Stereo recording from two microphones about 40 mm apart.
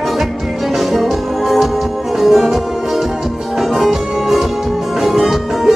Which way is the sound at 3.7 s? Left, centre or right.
Centre.